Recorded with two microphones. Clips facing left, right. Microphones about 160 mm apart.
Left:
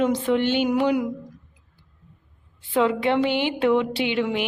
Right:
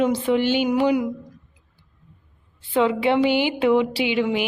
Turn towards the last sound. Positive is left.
turn(degrees=-5)  # may be behind; listen again after turning